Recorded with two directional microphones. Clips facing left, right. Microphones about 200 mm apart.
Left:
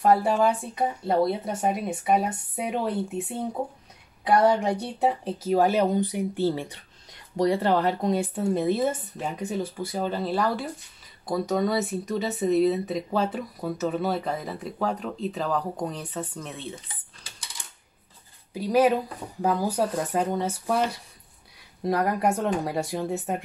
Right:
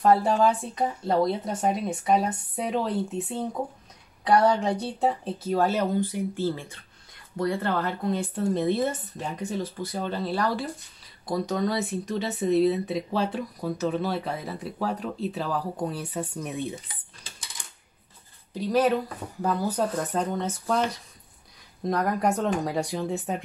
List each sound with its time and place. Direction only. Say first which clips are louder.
0.0 s speech: even; 10° left (ahead or behind)
4.5 s speech: left 1 dB; 10° left (ahead or behind); by 16.7 s 15° right (ahead or behind)
18.5 s speech: left 2 dB; 10° left (ahead or behind)